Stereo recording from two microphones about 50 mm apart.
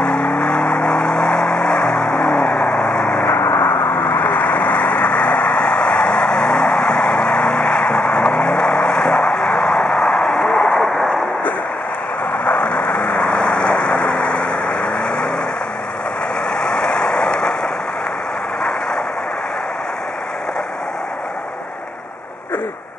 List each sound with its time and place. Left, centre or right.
0.0 s vehicle: left
3.3 s vehicle: left
3.5 s vehicle: left
3.8 s vehicle: left; by 10.8 s centre
12.4 s vehicle: left
16.4 s vehicle: centre